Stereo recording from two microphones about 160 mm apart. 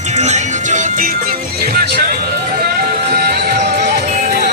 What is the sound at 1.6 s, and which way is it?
Music, 70° right (ahead or behind).